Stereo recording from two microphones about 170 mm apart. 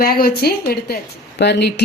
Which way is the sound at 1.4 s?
80° left.